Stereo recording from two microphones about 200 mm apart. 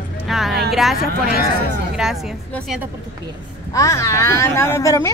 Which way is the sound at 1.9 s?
Centre (ahead or behind).